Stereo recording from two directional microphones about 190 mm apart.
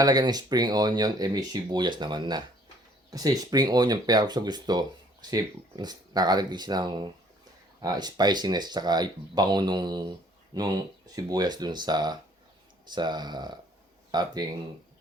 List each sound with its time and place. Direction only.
0.0 s speech: 20° right (ahead or behind)